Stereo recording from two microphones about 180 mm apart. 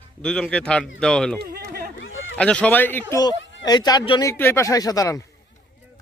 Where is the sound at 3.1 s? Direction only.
20° left (ahead or behind).